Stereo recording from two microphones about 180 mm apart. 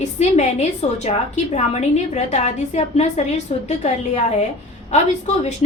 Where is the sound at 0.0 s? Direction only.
40° left (ahead or behind).